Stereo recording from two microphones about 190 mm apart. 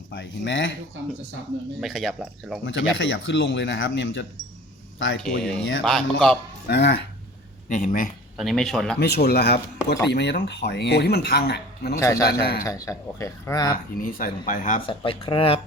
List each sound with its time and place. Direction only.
0.1 s speech: 75° left (ahead or behind)
1.8 s speech: centre (ahead or behind)
2.6 s speech: 75° left (ahead or behind)
5.4 s speech: 5° left (ahead or behind)
6.7 s speech: 60° left (ahead or behind)
7.7 s speech: 45° left (ahead or behind)
8.4 s speech: centre (ahead or behind)
9.0 s speech: 60° left (ahead or behind)
11.9 s speech: 15° left (ahead or behind)
12.2 s speech: 55° left (ahead or behind)
12.6 s speech: 15° left (ahead or behind)
14.0 s speech: 45° left (ahead or behind)
14.8 s speech: 25° left (ahead or behind)